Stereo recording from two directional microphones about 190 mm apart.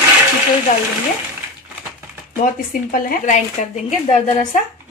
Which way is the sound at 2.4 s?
45° left (ahead or behind).